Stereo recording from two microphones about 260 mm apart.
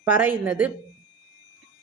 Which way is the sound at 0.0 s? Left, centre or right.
Centre.